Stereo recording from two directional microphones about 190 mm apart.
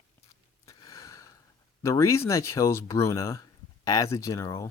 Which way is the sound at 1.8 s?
15° left (ahead or behind).